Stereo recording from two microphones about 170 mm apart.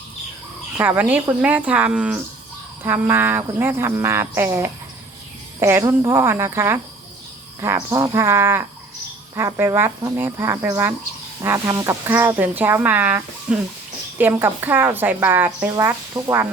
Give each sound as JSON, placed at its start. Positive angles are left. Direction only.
{"t": 0.8, "sound": "speech", "side_deg": -10}
{"t": 7.9, "sound": "speech", "side_deg": -20}